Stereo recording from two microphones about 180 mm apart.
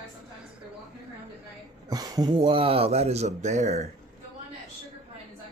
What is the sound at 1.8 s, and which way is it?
Speech, 20° right (ahead or behind).